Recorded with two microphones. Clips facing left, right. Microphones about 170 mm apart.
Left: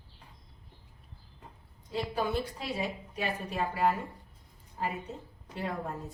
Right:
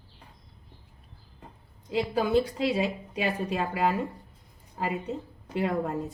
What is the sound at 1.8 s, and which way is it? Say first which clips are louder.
A woman's voice: right 5 dB; 90° right.